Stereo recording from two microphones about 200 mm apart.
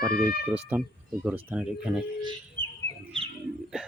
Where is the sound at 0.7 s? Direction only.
5° right (ahead or behind).